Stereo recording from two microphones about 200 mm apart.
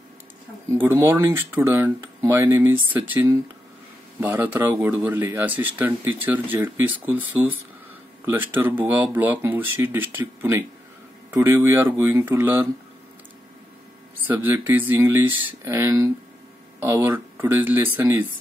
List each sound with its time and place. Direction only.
0.8 s speech: 10° right (ahead or behind)
14.2 s speech: 10° right (ahead or behind)